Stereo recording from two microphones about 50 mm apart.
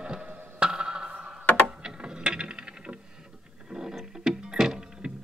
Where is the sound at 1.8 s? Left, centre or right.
Centre.